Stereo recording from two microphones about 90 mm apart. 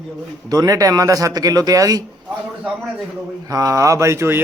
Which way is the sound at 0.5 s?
40° right (ahead or behind).